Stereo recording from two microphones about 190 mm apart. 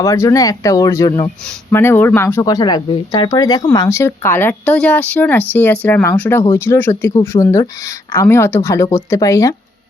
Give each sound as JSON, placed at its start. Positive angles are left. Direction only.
{"t": 0.0, "sound": "speech", "side_deg": 15}